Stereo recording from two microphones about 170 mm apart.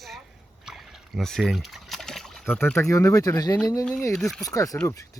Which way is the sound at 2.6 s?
15° left (ahead or behind).